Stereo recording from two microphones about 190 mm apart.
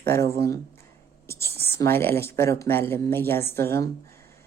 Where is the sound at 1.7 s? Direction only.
15° left (ahead or behind).